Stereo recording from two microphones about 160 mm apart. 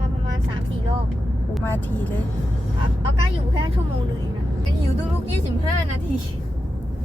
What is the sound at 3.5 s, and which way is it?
Speech, 30° right (ahead or behind).